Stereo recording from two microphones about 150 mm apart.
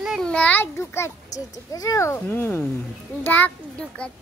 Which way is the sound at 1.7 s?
25° left (ahead or behind).